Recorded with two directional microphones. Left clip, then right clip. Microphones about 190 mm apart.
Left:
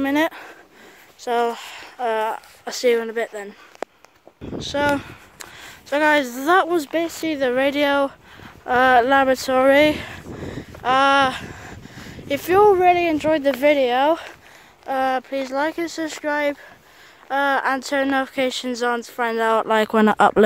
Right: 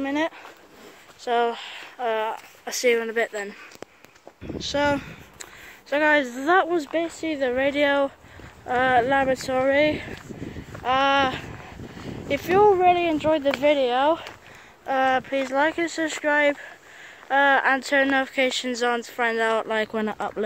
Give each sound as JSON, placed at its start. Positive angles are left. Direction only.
{"t": 0.0, "sound": "speech", "side_deg": 55}
{"t": 1.2, "sound": "speech", "side_deg": 40}
{"t": 2.6, "sound": "speech", "side_deg": 20}
{"t": 4.6, "sound": "speech", "side_deg": 10}
{"t": 6.8, "sound": "speech", "side_deg": 45}
{"t": 10.8, "sound": "a sound", "side_deg": 45}
{"t": 12.3, "sound": "speech", "side_deg": 50}
{"t": 14.9, "sound": "speech", "side_deg": 20}